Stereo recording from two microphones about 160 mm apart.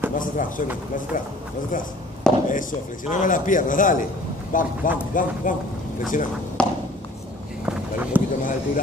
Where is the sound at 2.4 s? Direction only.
55° left (ahead or behind).